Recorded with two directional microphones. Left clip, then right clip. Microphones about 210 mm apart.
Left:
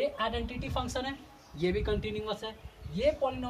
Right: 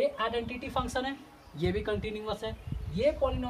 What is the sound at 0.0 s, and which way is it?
Speech, 10° right (ahead or behind).